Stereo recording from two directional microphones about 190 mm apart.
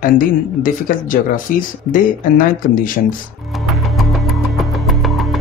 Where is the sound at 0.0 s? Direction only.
45° left (ahead or behind).